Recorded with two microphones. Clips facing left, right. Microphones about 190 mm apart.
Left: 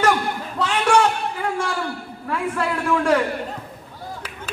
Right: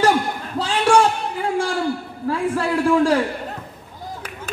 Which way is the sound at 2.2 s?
30° right (ahead or behind).